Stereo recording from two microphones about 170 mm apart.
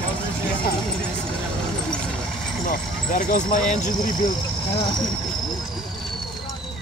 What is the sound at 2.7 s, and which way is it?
Speech, 50° left (ahead or behind).